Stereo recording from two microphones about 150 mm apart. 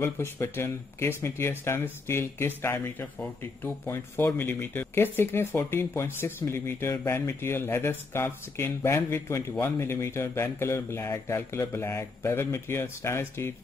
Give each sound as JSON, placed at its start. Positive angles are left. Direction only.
{"t": 0.0, "sound": "speech", "side_deg": 15}